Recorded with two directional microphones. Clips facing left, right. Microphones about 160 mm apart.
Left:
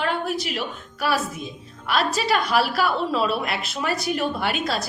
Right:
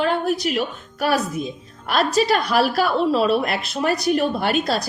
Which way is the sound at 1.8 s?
40° right (ahead or behind).